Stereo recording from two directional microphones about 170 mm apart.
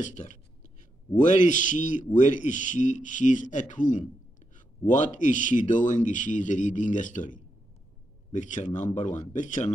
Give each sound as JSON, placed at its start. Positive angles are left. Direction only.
{"t": 0.0, "sound": "speech", "side_deg": 45}